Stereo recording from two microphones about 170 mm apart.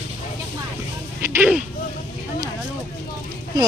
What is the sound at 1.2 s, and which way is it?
Speech, 10° right (ahead or behind).